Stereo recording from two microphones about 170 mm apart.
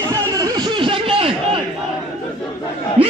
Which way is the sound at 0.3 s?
25° right (ahead or behind).